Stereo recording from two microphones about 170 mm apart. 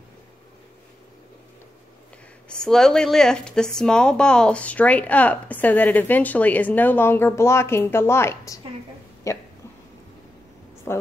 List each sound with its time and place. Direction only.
2.4 s speech: 5° left (ahead or behind)
10.9 s a woman's voice: 15° left (ahead or behind)